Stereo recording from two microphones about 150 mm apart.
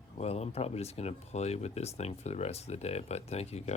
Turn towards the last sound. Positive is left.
turn(degrees=45)  # may be behind; listen again after turning